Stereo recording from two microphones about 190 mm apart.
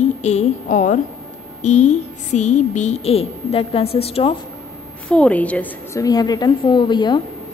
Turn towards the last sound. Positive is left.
turn(degrees=25)  # may be behind; listen again after turning